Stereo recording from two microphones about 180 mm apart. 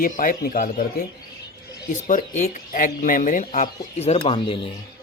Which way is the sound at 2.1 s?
45° left (ahead or behind).